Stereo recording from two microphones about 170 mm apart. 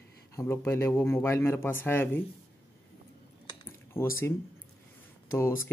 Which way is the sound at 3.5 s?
15° left (ahead or behind).